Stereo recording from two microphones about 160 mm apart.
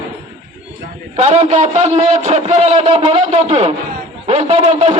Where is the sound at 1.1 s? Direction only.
45° right (ahead or behind).